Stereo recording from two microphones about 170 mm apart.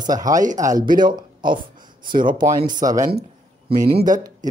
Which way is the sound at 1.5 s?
30° right (ahead or behind).